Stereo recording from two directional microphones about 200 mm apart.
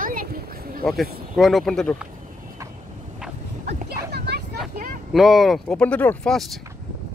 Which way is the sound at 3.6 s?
55° right (ahead or behind).